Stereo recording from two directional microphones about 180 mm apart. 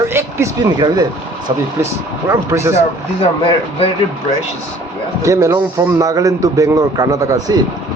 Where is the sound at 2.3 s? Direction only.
15° right (ahead or behind).